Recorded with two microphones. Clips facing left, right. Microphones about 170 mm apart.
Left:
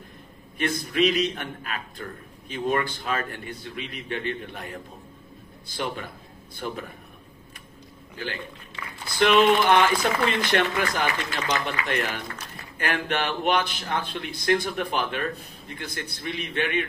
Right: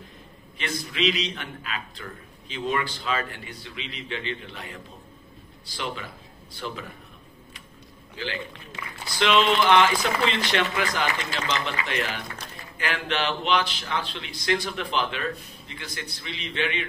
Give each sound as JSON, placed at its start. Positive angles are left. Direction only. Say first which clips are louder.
{"t": 0.6, "sound": "a man's voice", "louder": "left 5 dB", "side_deg": 50}
{"t": 9.2, "sound": "a man's voice", "louder": "left 3 dB", "side_deg": 50}